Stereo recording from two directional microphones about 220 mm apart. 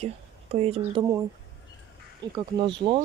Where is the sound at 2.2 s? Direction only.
20° right (ahead or behind).